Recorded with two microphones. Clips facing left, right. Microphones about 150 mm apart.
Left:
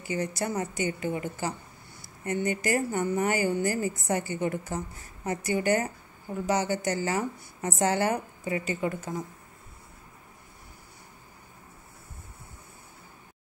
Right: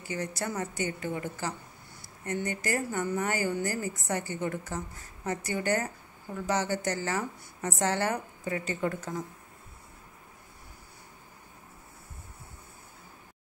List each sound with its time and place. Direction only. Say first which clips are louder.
0.1 s a woman's voice: left 4 dB; 20° left (ahead or behind)
5.2 s a woman's voice: left 4 dB; 15° left (ahead or behind)